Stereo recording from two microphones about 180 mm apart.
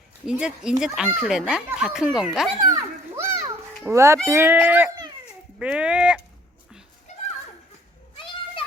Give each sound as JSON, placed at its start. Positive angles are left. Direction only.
{"t": 0.3, "sound": "speech", "side_deg": -5}
{"t": 3.2, "sound": "children playing", "side_deg": -15}
{"t": 3.8, "sound": "speech", "side_deg": -15}
{"t": 8.1, "sound": "children playing", "side_deg": 30}